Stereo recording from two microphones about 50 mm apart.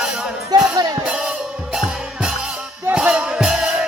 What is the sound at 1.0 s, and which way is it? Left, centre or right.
Music, right.